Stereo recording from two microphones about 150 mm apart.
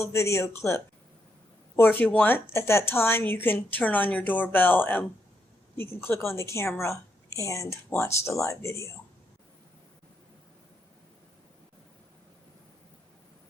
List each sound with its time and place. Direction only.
0.0 s a woman's voice: 20° left (ahead or behind)